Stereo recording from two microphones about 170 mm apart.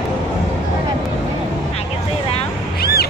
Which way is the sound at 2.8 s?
65° left (ahead or behind).